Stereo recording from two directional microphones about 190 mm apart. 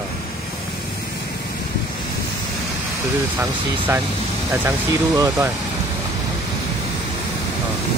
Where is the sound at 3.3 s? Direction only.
10° right (ahead or behind).